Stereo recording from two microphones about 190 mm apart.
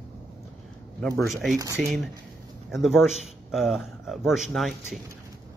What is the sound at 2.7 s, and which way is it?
Speech, centre (ahead or behind).